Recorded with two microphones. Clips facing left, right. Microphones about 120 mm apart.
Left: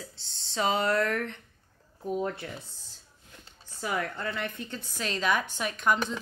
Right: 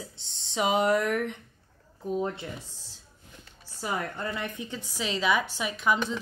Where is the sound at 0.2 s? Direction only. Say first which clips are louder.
Right 1 dB; 20° right (ahead or behind).